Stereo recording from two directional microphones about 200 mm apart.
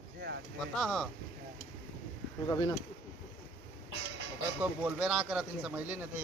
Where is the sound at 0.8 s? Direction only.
Centre (ahead or behind).